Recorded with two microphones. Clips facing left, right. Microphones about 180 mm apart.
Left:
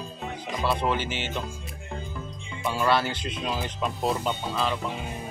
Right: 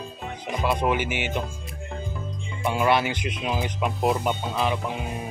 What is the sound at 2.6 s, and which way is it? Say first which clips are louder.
Speech: right 2 dB; 20° right (ahead or behind).